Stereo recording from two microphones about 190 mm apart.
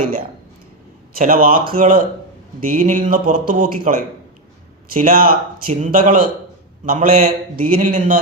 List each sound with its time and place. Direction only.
1.1 s speech: 50° right (ahead or behind)